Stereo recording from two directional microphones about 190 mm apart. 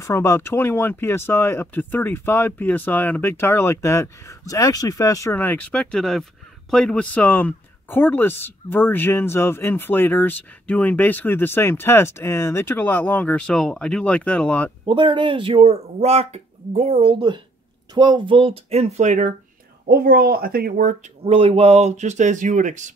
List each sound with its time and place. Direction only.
0.0 s speech: 15° left (ahead or behind)
14.9 s speech: 25° right (ahead or behind)
19.9 s speech: 50° right (ahead or behind)
21.2 s speech: 30° right (ahead or behind)